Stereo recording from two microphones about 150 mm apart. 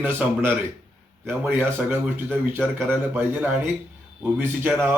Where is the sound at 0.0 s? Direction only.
10° right (ahead or behind).